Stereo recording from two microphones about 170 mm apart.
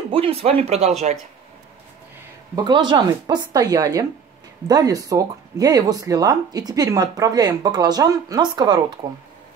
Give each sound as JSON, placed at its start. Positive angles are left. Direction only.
{"t": 0.1, "sound": "speech", "side_deg": -35}
{"t": 2.5, "sound": "speech", "side_deg": -25}